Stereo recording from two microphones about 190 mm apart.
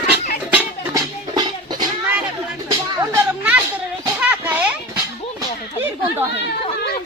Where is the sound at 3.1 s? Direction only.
10° right (ahead or behind).